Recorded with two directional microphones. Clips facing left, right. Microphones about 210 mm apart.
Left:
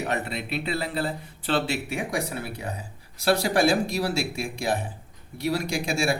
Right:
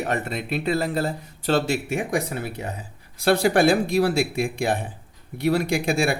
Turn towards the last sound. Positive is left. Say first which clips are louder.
# right 4 dB
turn(degrees=-55)  # may be behind; listen again after turning